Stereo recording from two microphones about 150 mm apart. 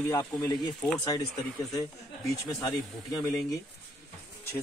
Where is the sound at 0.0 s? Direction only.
20° left (ahead or behind).